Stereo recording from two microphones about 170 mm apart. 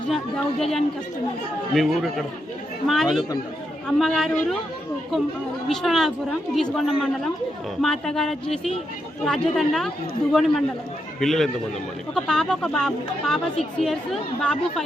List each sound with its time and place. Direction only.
0.6 s speech: centre (ahead or behind)
5.6 s speech: centre (ahead or behind)